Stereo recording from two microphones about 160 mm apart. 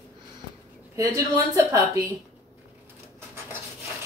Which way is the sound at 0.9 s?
20° right (ahead or behind).